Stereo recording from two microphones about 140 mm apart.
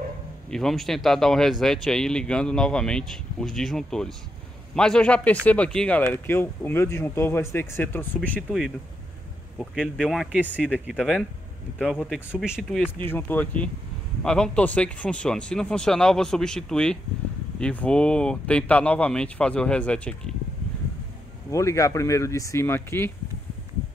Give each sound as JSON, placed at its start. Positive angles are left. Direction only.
{"t": 0.5, "sound": "speech", "side_deg": 5}
{"t": 8.4, "sound": "speech", "side_deg": 0}
{"t": 10.4, "sound": "speech", "side_deg": -10}
{"t": 10.9, "sound": "speech", "side_deg": 0}
{"t": 12.3, "sound": "speech", "side_deg": -5}
{"t": 12.7, "sound": "speech", "side_deg": 15}
{"t": 21.5, "sound": "speech", "side_deg": 20}